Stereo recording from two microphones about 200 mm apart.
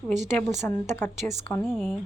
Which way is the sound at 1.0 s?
10° left (ahead or behind).